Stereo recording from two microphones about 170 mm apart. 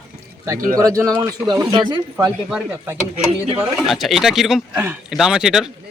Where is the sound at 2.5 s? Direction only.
5° right (ahead or behind).